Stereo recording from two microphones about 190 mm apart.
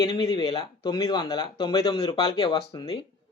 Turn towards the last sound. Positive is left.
turn(degrees=20)  # may be behind; listen again after turning